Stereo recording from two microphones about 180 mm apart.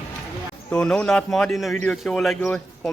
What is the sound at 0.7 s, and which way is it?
Speech, 5° left (ahead or behind).